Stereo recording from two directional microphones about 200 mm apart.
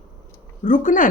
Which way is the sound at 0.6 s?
40° left (ahead or behind).